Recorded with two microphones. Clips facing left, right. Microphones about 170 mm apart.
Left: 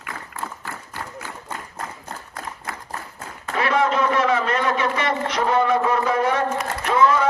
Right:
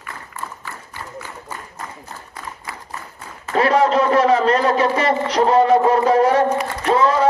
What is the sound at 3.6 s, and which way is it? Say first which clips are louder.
A man's voice: right 5 dB; 35° right (ahead or behind).